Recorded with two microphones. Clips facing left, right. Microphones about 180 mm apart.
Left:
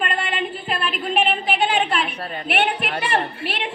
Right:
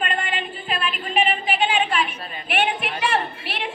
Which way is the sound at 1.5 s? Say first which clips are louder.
Left 1 dB; 65° left (ahead or behind).